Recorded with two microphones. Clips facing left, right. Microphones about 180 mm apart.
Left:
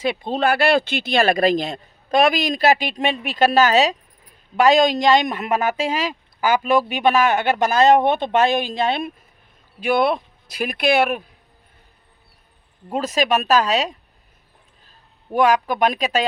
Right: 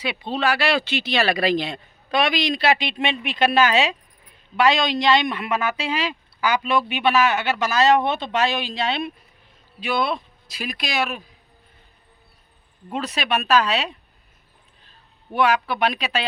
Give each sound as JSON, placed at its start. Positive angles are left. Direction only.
{"t": 0.0, "sound": "speech", "side_deg": 45}
{"t": 12.9, "sound": "speech", "side_deg": 40}
{"t": 15.3, "sound": "speech", "side_deg": 45}